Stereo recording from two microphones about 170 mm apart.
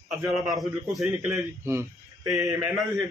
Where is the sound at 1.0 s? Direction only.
15° right (ahead or behind).